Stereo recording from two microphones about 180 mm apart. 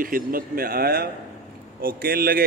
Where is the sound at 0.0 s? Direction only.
50° right (ahead or behind).